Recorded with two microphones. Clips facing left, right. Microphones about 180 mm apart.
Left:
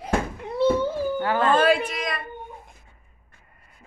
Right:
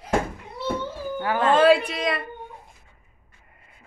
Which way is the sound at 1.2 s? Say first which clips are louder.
Right 2 dB; 15° right (ahead or behind).